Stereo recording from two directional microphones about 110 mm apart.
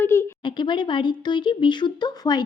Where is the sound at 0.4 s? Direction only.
45° left (ahead or behind).